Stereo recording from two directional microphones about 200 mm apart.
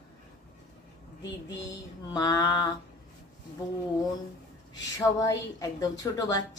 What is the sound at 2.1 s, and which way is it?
Speech, 20° left (ahead or behind).